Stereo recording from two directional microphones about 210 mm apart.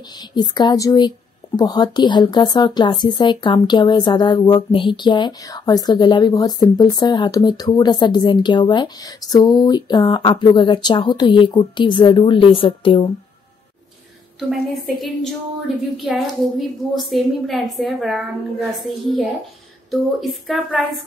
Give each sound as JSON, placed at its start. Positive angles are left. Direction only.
{"t": 0.2, "sound": "speech", "side_deg": 20}
{"t": 14.5, "sound": "a woman's voice", "side_deg": 0}